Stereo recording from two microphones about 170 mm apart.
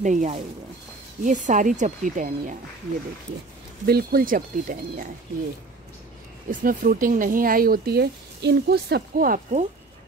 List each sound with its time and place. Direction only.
0.0 s speech: 45° right (ahead or behind)
3.8 s speech: 65° right (ahead or behind)
6.5 s speech: 50° right (ahead or behind)